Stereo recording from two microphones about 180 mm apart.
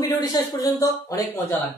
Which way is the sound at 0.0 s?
20° left (ahead or behind).